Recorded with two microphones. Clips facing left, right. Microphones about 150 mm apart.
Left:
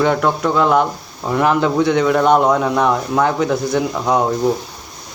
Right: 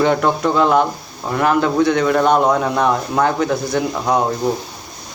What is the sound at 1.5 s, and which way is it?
Speech, 15° left (ahead or behind).